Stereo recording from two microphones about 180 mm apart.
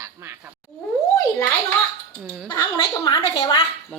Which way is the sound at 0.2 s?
15° right (ahead or behind).